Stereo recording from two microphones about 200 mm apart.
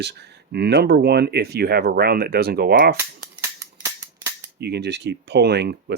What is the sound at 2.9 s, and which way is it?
Cap gun, 10° right (ahead or behind).